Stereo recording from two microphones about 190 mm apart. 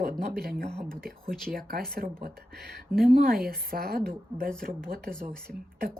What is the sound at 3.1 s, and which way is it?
Speech, 50° right (ahead or behind).